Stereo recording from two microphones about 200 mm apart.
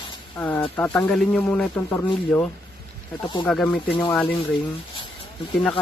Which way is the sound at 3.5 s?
5° left (ahead or behind).